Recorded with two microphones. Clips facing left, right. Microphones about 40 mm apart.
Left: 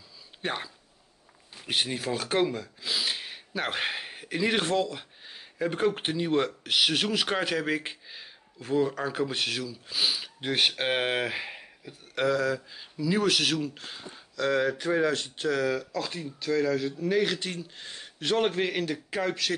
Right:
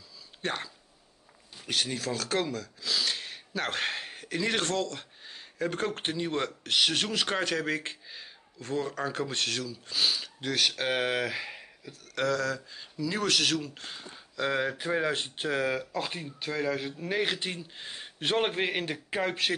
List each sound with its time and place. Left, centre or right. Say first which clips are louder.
0.4 s speech: left 1 dB; centre
1.7 s speech: left 2 dB; left
10.4 s speech: left 2 dB; left; by 14.2 s centre
14.3 s speech: left 3 dB; centre
15.1 s speech: left 2 dB; right